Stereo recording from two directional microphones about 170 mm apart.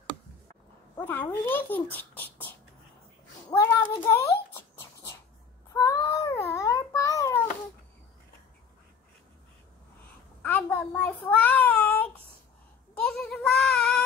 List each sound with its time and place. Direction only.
0.9 s a child's voice: 10° left (ahead or behind)
3.4 s a child's voice: 10° left (ahead or behind)
5.7 s babbling: 20° left (ahead or behind)
10.4 s child singing: 10° left (ahead or behind)